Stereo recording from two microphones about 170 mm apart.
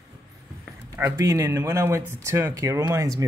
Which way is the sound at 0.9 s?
15° right (ahead or behind).